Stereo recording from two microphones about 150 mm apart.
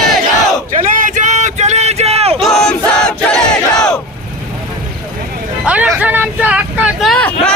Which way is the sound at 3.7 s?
25° left (ahead or behind).